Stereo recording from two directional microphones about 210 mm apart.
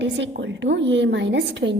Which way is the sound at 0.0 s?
55° right (ahead or behind).